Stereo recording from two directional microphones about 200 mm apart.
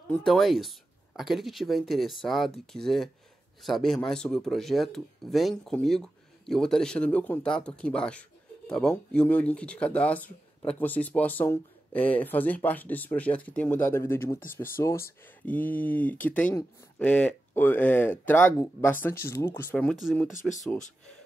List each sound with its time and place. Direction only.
0.1 s speech: centre (ahead or behind)
20.3 s speech: 40° left (ahead or behind)